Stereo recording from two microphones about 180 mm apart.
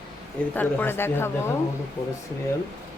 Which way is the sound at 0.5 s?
10° left (ahead or behind).